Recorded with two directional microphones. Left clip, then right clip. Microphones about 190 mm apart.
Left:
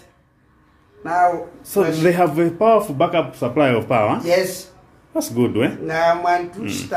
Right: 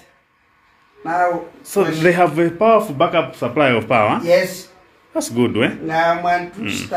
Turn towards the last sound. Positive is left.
turn(degrees=5)  # may be behind; listen again after turning